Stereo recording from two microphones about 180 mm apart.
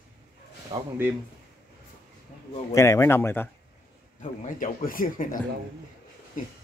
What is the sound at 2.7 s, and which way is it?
Speech, 15° left (ahead or behind).